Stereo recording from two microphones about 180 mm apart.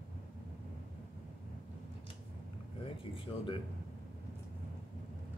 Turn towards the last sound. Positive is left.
turn(degrees=30)  # may be behind; listen again after turning